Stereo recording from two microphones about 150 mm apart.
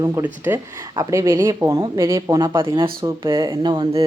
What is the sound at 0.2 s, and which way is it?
Speech, 15° right (ahead or behind).